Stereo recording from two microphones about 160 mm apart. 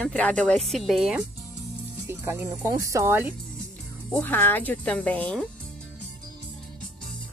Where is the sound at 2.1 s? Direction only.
15° right (ahead or behind).